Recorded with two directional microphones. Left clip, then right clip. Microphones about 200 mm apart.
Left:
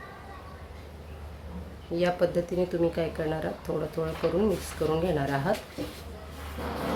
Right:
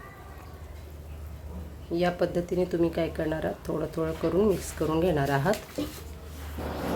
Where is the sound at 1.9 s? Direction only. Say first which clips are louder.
Left 1 dB; 5° right (ahead or behind).